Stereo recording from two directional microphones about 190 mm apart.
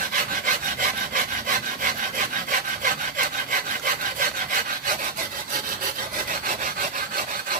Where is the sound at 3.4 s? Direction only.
45° right (ahead or behind).